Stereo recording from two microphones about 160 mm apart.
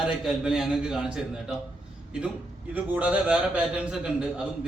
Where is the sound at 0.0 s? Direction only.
5° right (ahead or behind).